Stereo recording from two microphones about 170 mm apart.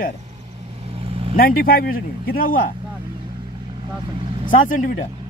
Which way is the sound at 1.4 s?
60° left (ahead or behind).